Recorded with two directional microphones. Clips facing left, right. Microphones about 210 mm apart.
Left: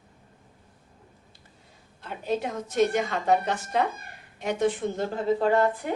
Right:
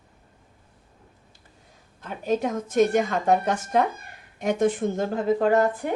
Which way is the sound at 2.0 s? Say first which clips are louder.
Right 4 dB; 45° right (ahead or behind).